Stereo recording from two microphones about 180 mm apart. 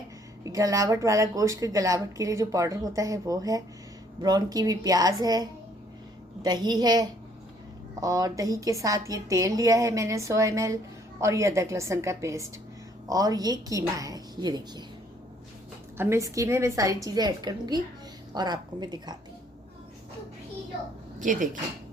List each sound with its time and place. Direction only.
0.4 s a woman's voice: 20° right (ahead or behind)
16.0 s a woman's voice: 15° right (ahead or behind)
21.2 s speech: 45° right (ahead or behind)